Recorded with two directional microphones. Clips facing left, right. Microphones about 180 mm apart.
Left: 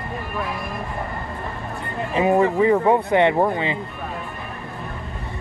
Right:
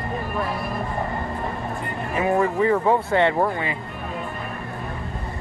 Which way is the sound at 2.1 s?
20° left (ahead or behind).